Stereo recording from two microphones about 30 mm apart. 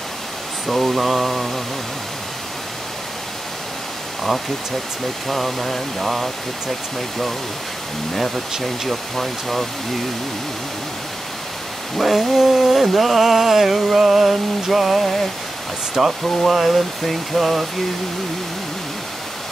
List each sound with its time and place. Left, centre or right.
0.7 s speech: centre
5.3 s speech: centre
8.6 s speech: centre
12.0 s a sound: centre
16.0 s speech: centre